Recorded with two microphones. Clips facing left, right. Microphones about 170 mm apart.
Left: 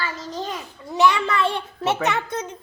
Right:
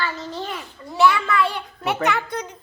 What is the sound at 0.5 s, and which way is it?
A child's voice, 20° left (ahead or behind).